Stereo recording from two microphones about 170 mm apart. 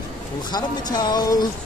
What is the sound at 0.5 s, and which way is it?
Speech, 25° left (ahead or behind).